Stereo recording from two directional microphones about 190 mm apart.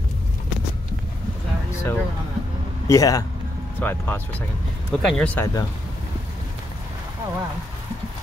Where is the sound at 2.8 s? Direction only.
20° left (ahead or behind).